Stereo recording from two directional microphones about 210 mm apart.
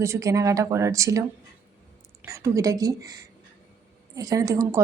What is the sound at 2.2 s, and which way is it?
Speech, 15° right (ahead or behind).